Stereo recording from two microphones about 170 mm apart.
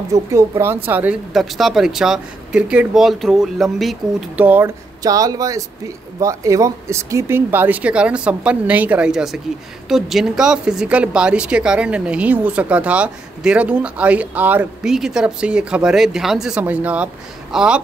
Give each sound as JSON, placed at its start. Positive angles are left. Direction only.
{"t": 0.1, "sound": "speech", "side_deg": -20}